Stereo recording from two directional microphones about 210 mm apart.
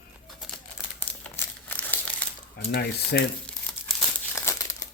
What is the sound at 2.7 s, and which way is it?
Speech, 50° left (ahead or behind).